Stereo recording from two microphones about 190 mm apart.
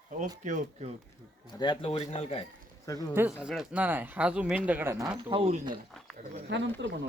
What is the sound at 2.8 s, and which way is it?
Speech, 15° left (ahead or behind).